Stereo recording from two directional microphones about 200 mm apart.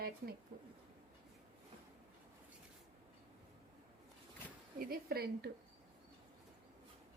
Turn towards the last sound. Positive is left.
turn(degrees=-50)  # may be behind; listen again after turning